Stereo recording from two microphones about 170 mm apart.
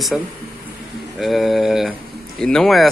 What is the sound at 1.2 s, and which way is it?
Speech, centre (ahead or behind).